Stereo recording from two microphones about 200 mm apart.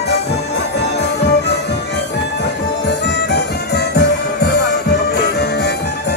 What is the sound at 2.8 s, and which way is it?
Music, 60° left (ahead or behind).